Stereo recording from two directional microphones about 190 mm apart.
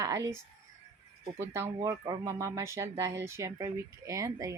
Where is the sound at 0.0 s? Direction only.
15° right (ahead or behind).